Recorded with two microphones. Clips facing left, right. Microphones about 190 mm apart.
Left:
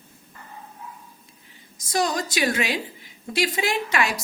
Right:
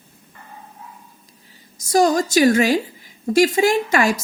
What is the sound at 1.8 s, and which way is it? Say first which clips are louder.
A woman's voice: right 8 dB; 45° right (ahead or behind).